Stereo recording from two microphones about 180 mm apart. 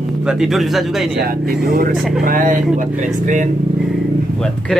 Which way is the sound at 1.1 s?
55° right (ahead or behind).